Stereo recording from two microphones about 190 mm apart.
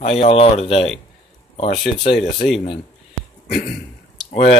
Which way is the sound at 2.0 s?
35° left (ahead or behind).